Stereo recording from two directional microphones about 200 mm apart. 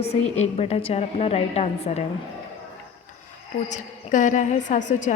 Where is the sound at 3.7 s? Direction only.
40° left (ahead or behind).